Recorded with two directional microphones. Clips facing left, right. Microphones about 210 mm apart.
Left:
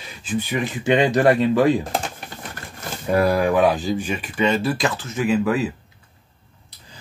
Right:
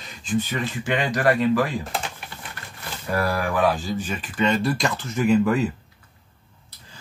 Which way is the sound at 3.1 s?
20° left (ahead or behind).